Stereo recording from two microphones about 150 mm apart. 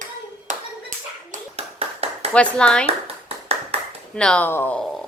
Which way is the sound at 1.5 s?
40° right (ahead or behind).